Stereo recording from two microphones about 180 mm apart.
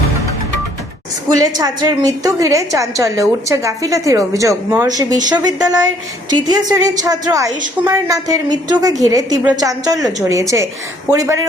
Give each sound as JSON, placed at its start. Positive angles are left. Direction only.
{"t": 1.4, "sound": "a woman's voice", "side_deg": -20}